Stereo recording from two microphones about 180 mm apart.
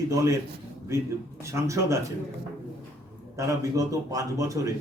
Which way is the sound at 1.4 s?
15° right (ahead or behind).